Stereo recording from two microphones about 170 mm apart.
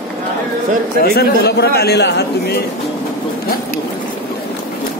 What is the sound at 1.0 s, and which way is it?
A man's voice, 65° left (ahead or behind).